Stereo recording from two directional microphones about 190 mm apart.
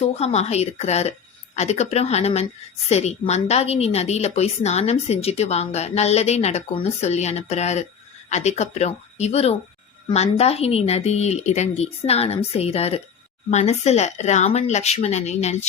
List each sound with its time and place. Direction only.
0.2 s a woman's voice: 35° left (ahead or behind)